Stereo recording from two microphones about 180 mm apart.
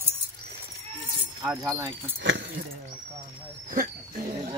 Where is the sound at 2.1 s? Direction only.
75° right (ahead or behind).